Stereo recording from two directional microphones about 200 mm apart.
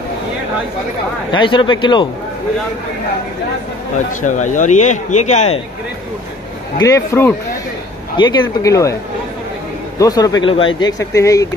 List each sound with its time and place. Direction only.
1.3 s speech: 25° left (ahead or behind)
4.2 s speech: 40° left (ahead or behind)
6.8 s speech: 15° left (ahead or behind)
9.9 s speech: 20° left (ahead or behind)